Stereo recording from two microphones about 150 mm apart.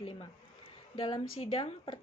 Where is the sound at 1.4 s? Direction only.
40° left (ahead or behind).